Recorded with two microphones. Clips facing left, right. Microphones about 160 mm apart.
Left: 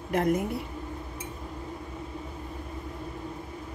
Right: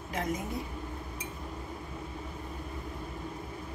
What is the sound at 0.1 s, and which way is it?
Speech, 60° left (ahead or behind).